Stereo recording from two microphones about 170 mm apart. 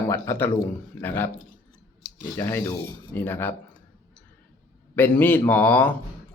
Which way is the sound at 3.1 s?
10° left (ahead or behind).